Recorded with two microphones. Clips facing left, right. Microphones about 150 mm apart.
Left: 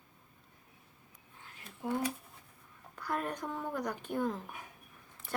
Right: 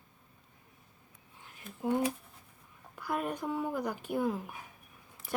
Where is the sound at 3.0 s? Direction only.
10° right (ahead or behind).